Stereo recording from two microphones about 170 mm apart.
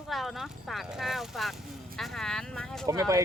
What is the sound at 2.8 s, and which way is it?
Speech, 20° right (ahead or behind).